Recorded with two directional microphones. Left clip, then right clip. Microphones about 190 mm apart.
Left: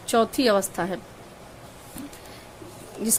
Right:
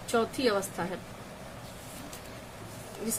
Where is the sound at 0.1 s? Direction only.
55° left (ahead or behind).